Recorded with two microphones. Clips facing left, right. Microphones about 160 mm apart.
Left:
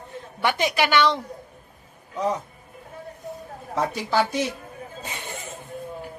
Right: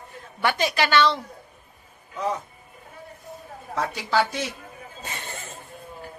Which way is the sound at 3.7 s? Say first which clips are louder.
Left 1 dB; 15° left (ahead or behind).